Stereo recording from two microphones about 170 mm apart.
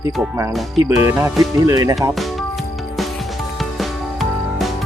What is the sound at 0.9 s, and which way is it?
Music, 15° right (ahead or behind).